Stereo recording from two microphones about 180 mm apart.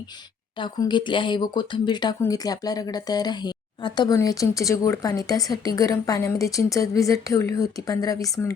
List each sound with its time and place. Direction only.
0.5 s speech: 25° left (ahead or behind)